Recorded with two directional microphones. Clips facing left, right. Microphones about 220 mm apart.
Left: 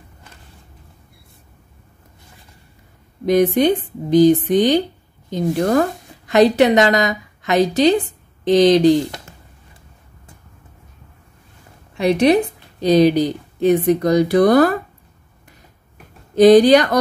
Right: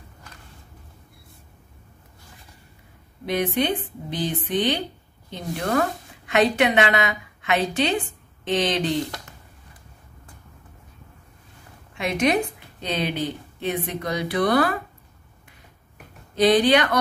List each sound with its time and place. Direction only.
3.3 s a woman's voice: 40° left (ahead or behind)
12.0 s a woman's voice: 35° left (ahead or behind)
16.3 s a woman's voice: 45° left (ahead or behind)